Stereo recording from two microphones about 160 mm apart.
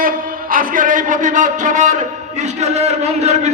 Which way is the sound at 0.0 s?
60° right (ahead or behind).